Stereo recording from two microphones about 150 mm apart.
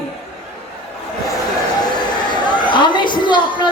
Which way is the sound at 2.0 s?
30° left (ahead or behind).